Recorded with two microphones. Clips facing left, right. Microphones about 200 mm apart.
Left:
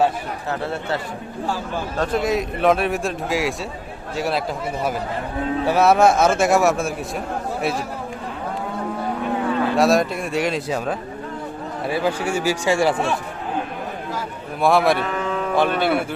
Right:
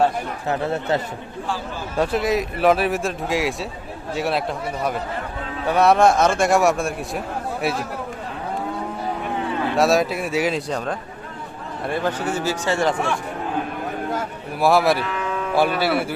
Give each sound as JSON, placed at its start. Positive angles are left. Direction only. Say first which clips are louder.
{"t": 0.4, "sound": "speech", "louder": "right 3 dB", "side_deg": -20}
{"t": 2.0, "sound": "a man's voice", "louder": "right 1 dB", "side_deg": 0}
{"t": 9.7, "sound": "a man's voice", "louder": "right 1 dB", "side_deg": 0}
{"t": 14.6, "sound": "a man's voice", "louder": "even", "side_deg": 0}